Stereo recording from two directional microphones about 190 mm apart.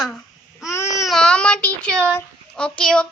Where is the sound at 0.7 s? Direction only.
15° left (ahead or behind).